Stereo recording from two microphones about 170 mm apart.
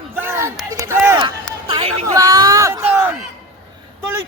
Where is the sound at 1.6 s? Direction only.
35° right (ahead or behind).